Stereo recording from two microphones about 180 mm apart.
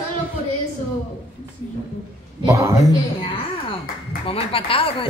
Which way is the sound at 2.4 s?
15° right (ahead or behind).